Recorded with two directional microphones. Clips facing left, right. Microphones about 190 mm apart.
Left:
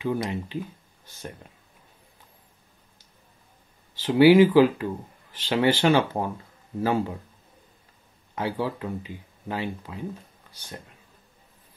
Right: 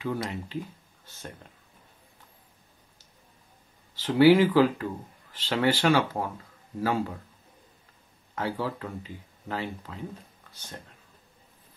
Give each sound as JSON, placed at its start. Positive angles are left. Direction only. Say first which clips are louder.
{"t": 0.0, "sound": "speech", "louder": "left 4 dB", "side_deg": 15}
{"t": 4.0, "sound": "speech", "louder": "left 3 dB", "side_deg": 15}
{"t": 8.4, "sound": "speech", "louder": "left 3 dB", "side_deg": 15}